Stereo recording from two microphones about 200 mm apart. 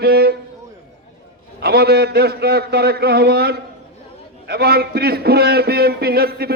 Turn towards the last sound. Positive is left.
turn(degrees=-50)  # may be behind; listen again after turning